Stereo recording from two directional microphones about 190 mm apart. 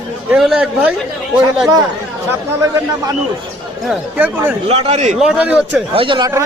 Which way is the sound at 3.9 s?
10° right (ahead or behind).